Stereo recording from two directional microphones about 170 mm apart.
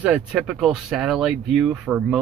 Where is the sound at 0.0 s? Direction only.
5° right (ahead or behind).